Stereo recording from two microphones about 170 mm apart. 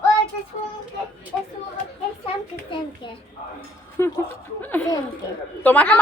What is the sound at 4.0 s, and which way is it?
A woman's voice, 15° left (ahead or behind).